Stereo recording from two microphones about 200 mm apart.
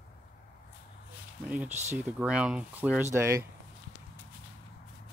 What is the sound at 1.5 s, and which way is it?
Speech, 5° right (ahead or behind).